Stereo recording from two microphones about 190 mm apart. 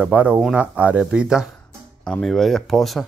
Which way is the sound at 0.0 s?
5° right (ahead or behind).